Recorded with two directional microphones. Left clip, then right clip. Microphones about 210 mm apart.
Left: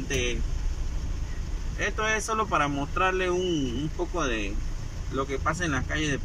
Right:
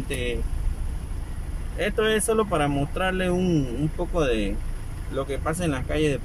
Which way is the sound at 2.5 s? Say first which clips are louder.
Right 1 dB; 20° right (ahead or behind).